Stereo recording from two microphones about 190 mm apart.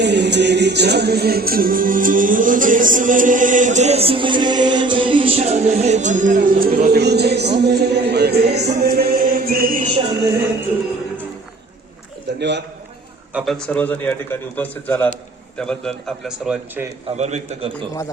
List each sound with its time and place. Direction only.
0.0 s music: 65° right (ahead or behind); by 9.9 s 45° right (ahead or behind)
12.4 s music: 65° right (ahead or behind)
13.3 s a man's voice: centre (ahead or behind)
17.2 s a man's voice: 35° right (ahead or behind)